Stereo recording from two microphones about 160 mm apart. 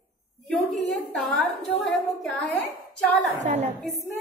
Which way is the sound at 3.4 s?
50° right (ahead or behind).